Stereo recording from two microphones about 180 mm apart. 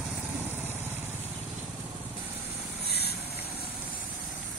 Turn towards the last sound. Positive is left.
turn(degrees=65)  # may be behind; listen again after turning